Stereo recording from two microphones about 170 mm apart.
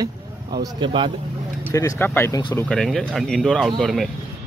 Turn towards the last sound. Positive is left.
turn(degrees=0)  # may be behind; listen again after turning